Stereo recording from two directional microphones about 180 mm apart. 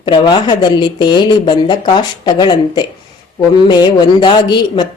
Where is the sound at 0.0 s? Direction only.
25° left (ahead or behind).